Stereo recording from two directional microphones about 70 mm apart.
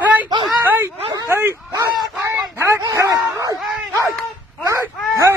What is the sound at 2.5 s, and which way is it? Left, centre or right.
Dog, right.